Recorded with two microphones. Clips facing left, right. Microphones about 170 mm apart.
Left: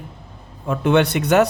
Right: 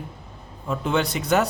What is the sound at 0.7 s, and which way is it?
Speech, 70° left (ahead or behind).